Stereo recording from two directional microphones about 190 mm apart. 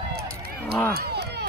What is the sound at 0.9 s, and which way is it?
Run, 60° right (ahead or behind).